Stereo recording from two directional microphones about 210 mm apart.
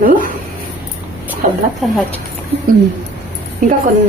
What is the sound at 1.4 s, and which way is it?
Speech, 40° right (ahead or behind).